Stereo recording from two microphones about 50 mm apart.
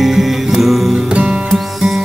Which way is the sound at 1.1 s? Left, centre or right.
Centre.